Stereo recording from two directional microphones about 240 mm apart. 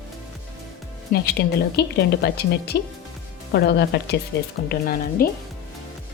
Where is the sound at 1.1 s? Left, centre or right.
Left.